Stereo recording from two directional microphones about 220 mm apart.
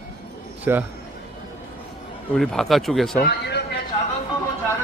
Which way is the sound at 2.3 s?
Centre (ahead or behind).